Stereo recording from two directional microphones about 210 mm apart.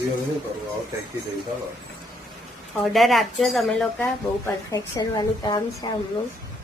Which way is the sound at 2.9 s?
Centre (ahead or behind).